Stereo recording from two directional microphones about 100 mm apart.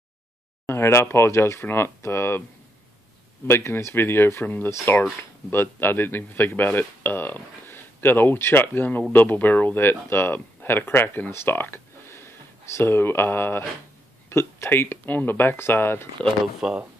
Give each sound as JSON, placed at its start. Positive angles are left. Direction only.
{"t": 0.7, "sound": "speech", "side_deg": 25}
{"t": 3.4, "sound": "speech", "side_deg": 25}
{"t": 16.6, "sound": "speech", "side_deg": -5}